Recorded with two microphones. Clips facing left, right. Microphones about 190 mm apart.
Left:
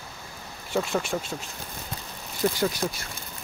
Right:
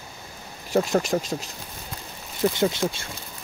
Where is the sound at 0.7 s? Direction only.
40° right (ahead or behind).